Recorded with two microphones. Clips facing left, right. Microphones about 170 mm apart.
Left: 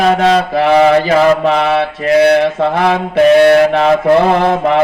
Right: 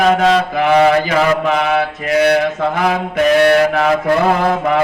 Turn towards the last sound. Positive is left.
turn(degrees=25)  # may be behind; listen again after turning